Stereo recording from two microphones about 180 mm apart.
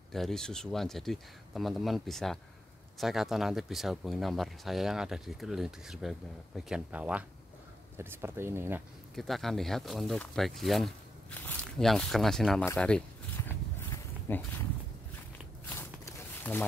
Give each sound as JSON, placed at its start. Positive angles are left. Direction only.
{"t": 0.1, "sound": "speech", "side_deg": 0}
{"t": 9.1, "sound": "speech", "side_deg": 0}
{"t": 12.6, "sound": "walk", "side_deg": 5}
{"t": 15.7, "sound": "a sound", "side_deg": 15}